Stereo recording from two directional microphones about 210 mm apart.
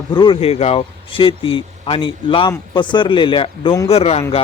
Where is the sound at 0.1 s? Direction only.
20° left (ahead or behind).